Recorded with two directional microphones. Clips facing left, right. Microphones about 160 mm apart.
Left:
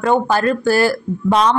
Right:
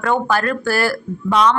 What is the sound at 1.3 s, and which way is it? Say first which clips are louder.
Speech: left 1 dB; 35° left (ahead or behind).